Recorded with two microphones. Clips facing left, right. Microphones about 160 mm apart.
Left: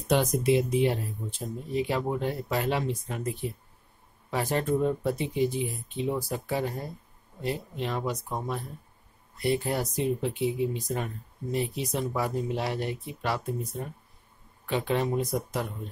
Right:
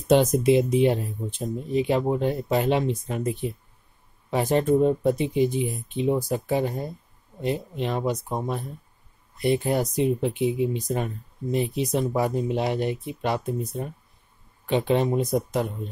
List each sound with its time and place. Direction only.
0.1 s speech: 20° right (ahead or behind)